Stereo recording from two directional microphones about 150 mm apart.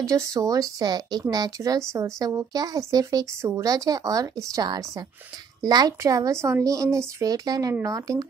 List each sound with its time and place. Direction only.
0.0 s speech: 20° right (ahead or behind)